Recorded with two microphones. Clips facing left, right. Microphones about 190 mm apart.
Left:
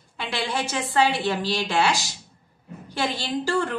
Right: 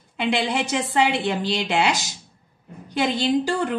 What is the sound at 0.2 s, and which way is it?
A woman's voice, 20° right (ahead or behind).